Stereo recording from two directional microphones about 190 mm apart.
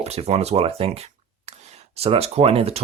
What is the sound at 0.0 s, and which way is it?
Speech, 35° right (ahead or behind).